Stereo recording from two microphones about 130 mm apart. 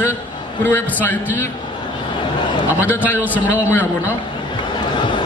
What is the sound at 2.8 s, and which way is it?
A man's voice, 15° left (ahead or behind).